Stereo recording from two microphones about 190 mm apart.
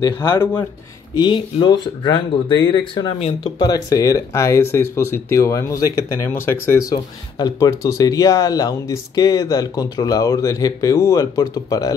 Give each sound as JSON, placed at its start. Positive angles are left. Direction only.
{"t": 0.0, "sound": "speech", "side_deg": 15}
{"t": 1.1, "sound": "speech", "side_deg": 25}